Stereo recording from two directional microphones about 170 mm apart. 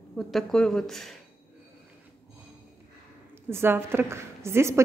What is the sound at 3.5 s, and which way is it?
A woman's voice, 15° right (ahead or behind).